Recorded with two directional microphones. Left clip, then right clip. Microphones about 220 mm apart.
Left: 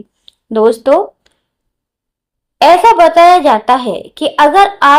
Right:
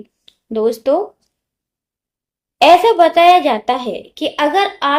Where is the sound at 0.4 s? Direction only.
15° left (ahead or behind).